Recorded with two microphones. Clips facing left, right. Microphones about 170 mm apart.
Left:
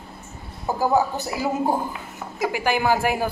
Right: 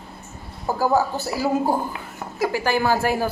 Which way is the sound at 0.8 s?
20° left (ahead or behind).